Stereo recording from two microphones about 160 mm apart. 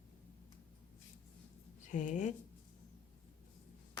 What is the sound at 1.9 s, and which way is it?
Speech, 50° left (ahead or behind).